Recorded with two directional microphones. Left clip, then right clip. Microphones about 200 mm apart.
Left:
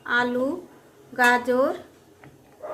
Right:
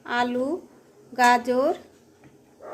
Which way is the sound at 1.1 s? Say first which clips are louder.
Even; 25° right (ahead or behind).